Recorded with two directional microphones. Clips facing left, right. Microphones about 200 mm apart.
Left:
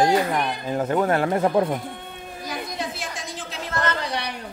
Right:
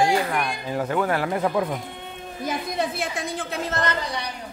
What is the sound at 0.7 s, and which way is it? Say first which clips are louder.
Speech: left 2 dB; 25° left (ahead or behind).